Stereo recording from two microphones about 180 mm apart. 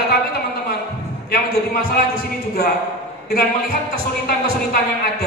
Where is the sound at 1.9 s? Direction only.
55° left (ahead or behind).